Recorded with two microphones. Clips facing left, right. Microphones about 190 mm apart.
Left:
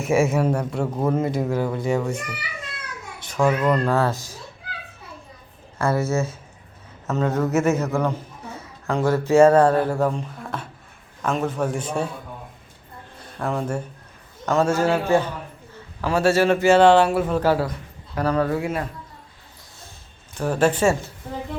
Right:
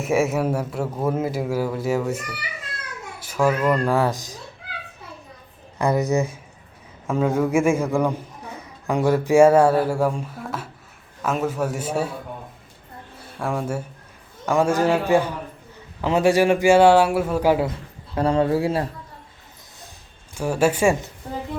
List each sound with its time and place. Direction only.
0.0 s a man's voice: centre (ahead or behind)
5.8 s a man's voice: 15° right (ahead or behind)
13.1 s a man's voice: 10° right (ahead or behind); by 18.9 s 30° right (ahead or behind)
20.3 s a man's voice: 10° right (ahead or behind)